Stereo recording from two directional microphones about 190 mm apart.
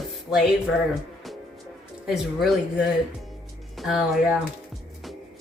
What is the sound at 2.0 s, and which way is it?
Speech, centre (ahead or behind).